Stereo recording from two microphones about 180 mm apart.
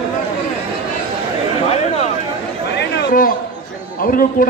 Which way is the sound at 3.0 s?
50° left (ahead or behind).